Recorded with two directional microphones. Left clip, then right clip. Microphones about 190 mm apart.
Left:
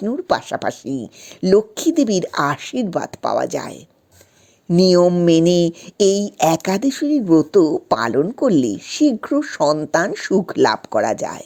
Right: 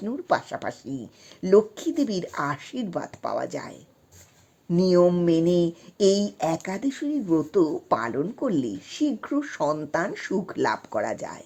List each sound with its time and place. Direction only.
0.0 s speech: 35° left (ahead or behind)
4.8 s speech: 40° left (ahead or behind)